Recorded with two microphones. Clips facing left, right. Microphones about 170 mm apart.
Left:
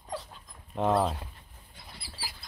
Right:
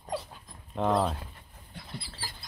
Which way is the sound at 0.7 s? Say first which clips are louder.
Left 1 dB; 5° left (ahead or behind).